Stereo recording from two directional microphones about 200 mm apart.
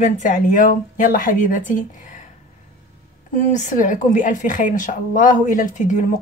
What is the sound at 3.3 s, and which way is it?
A woman's voice, 40° left (ahead or behind).